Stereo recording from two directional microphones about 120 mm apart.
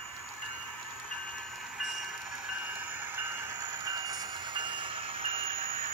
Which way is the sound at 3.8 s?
30° right (ahead or behind).